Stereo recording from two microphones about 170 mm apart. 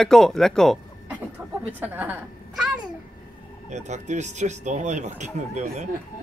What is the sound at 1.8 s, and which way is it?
Speech, 10° right (ahead or behind).